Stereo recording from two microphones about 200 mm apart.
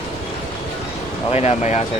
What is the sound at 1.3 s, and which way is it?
Speech, 35° left (ahead or behind).